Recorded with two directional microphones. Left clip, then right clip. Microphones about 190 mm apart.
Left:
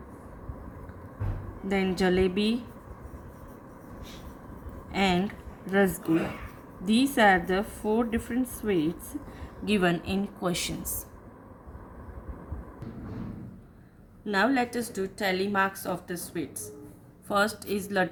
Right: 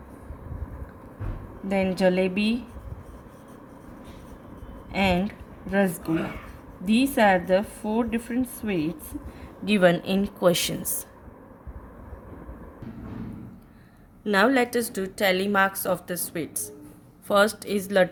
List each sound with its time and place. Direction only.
1.6 s speech: 25° right (ahead or behind)
4.9 s speech: 25° right (ahead or behind)
9.6 s speech: 30° right (ahead or behind)
14.3 s a woman's voice: 50° right (ahead or behind)
17.2 s a woman's voice: 45° right (ahead or behind)